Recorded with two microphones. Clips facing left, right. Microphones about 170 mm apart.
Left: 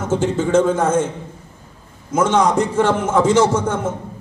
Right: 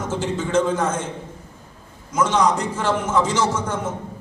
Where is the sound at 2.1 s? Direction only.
55° left (ahead or behind).